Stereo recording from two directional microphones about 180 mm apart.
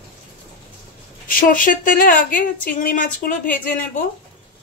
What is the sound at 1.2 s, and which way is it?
A woman's voice, 50° left (ahead or behind).